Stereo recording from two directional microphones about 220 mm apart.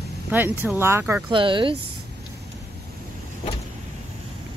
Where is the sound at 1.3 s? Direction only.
20° right (ahead or behind).